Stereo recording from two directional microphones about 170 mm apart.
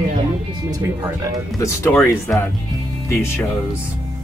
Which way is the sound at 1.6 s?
15° left (ahead or behind).